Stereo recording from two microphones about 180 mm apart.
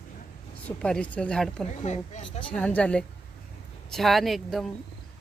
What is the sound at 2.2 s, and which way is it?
Speech, 30° left (ahead or behind).